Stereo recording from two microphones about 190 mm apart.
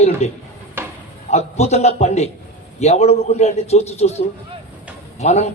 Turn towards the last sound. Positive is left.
turn(degrees=35)  # may be behind; listen again after turning